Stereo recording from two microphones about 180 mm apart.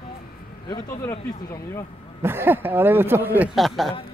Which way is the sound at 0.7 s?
20° left (ahead or behind).